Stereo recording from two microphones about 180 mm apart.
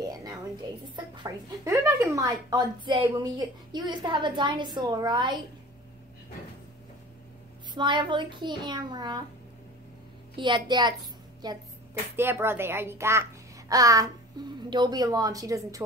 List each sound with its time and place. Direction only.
0.0 s a sound: 20° right (ahead or behind)
0.9 s a child's voice: 25° right (ahead or behind)
7.7 s speech: 25° right (ahead or behind)
10.3 s speech: 25° right (ahead or behind)
12.2 s a child's voice: 10° right (ahead or behind)